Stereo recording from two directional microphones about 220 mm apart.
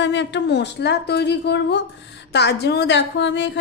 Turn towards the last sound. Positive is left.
turn(degrees=55)  # may be behind; listen again after turning